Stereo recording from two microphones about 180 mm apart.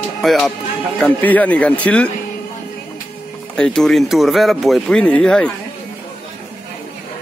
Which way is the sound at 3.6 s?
5° left (ahead or behind).